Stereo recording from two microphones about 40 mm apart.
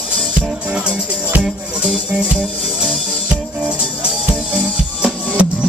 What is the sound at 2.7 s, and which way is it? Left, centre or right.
Music, centre.